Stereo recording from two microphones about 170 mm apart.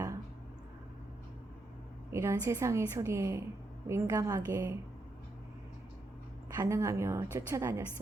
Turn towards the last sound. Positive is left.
turn(degrees=-15)  # may be behind; listen again after turning